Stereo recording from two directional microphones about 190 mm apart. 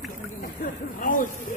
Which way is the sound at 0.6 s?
45° left (ahead or behind).